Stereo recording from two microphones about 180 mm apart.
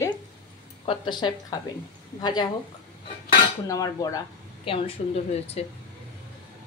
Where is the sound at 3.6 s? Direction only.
20° left (ahead or behind).